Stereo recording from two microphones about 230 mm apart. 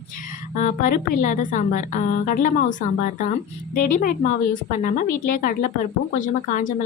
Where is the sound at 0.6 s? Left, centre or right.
Left.